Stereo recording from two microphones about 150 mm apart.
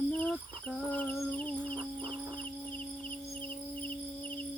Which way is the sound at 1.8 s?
35° right (ahead or behind).